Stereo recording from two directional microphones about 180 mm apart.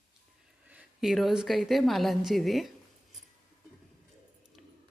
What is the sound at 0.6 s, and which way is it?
A woman's voice, 10° right (ahead or behind).